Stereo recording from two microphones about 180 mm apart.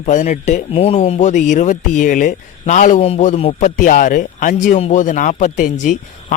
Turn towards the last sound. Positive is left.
turn(degrees=45)  # may be behind; listen again after turning